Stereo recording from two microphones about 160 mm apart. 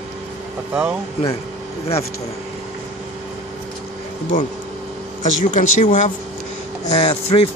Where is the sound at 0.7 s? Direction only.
5° right (ahead or behind).